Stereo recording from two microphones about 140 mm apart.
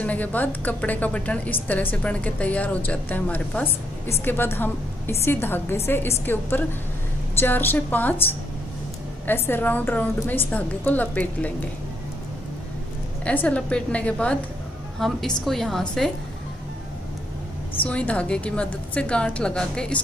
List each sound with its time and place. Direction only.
0.0 s a woman's voice: 10° left (ahead or behind)
13.2 s a woman's voice: 10° left (ahead or behind)
17.8 s a woman's voice: 10° left (ahead or behind)